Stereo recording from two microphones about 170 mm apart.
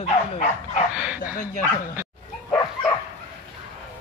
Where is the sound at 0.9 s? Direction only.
5° right (ahead or behind).